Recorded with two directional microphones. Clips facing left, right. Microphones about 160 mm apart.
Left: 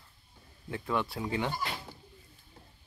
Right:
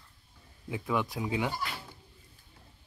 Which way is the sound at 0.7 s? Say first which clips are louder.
Right 1 dB; 5° right (ahead or behind).